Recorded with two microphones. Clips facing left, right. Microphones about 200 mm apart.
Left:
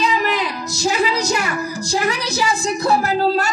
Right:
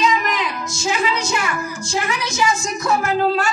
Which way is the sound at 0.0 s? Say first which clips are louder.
Even; 35° left (ahead or behind).